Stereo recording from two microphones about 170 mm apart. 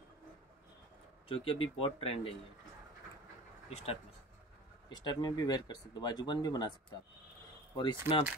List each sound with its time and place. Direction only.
1.3 s speech: 30° left (ahead or behind)
3.6 s speech: 35° left (ahead or behind)
4.8 s speech: 25° left (ahead or behind)
7.7 s speech: 25° left (ahead or behind)